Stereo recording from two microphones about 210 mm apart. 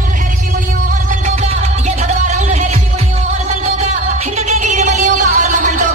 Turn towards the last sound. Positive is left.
turn(degrees=-40)  # may be behind; listen again after turning